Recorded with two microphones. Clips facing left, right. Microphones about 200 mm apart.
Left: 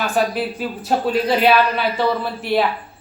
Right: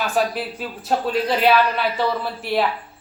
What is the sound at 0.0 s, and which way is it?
Speech, centre (ahead or behind).